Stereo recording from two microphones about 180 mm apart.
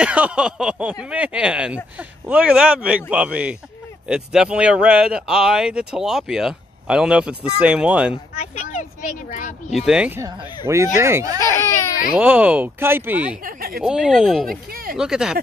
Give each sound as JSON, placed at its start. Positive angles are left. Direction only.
{"t": 0.0, "sound": "speech", "side_deg": -5}
{"t": 8.4, "sound": "speech", "side_deg": 40}
{"t": 9.7, "sound": "speech", "side_deg": 0}
{"t": 11.4, "sound": "speech", "side_deg": 15}
{"t": 12.1, "sound": "speech", "side_deg": -10}
{"t": 13.4, "sound": "speech", "side_deg": -55}
{"t": 13.7, "sound": "speech", "side_deg": -5}
{"t": 14.7, "sound": "speech", "side_deg": -55}
{"t": 15.0, "sound": "speech", "side_deg": -5}